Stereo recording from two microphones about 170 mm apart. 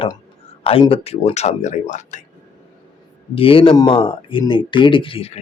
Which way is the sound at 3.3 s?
35° left (ahead or behind).